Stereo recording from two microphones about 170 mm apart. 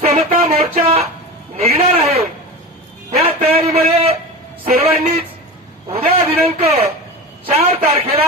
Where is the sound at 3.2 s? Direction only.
35° right (ahead or behind).